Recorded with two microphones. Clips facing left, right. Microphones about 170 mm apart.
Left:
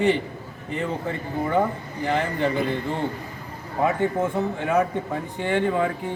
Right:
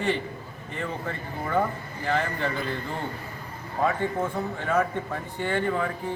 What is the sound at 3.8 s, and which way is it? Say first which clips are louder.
Speech: left 3 dB; 20° left (ahead or behind).